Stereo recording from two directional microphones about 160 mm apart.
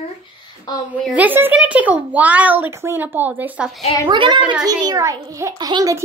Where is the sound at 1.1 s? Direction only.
10° right (ahead or behind).